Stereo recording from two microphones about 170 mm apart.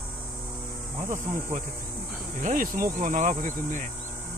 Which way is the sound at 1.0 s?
50° right (ahead or behind).